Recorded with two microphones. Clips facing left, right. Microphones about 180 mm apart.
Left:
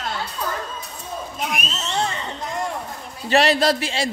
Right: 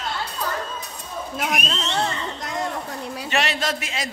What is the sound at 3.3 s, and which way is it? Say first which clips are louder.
Speech: left 8 dB; 35° left (ahead or behind).